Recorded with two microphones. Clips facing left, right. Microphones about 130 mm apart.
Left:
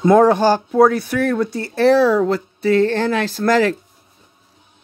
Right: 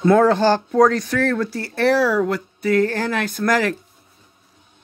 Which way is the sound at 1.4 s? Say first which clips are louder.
Left 4 dB; 25° left (ahead or behind).